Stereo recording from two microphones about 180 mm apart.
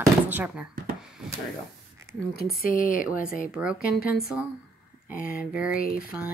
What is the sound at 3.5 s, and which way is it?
Speech, 5° right (ahead or behind).